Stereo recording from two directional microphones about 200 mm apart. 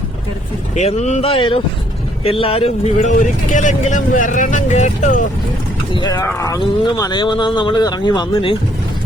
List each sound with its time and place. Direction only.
0.8 s speech: 35° left (ahead or behind)
5.9 s speech: 20° left (ahead or behind)